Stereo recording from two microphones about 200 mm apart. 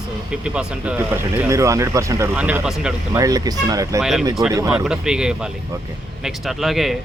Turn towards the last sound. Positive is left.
turn(degrees=0)  # may be behind; listen again after turning